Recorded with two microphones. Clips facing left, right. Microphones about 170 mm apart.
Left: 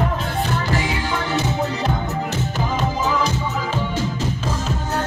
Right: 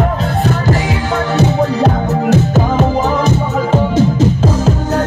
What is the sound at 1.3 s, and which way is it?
Music, 75° right (ahead or behind).